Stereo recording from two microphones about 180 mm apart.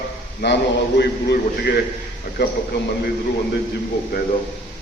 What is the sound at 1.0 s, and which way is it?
A man's voice, 65° left (ahead or behind).